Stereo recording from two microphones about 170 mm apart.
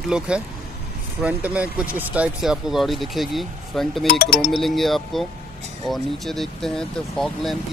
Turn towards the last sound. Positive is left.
turn(degrees=0)  # may be behind; listen again after turning